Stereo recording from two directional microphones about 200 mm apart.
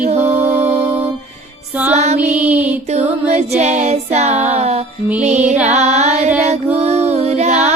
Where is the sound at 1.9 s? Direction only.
35° right (ahead or behind).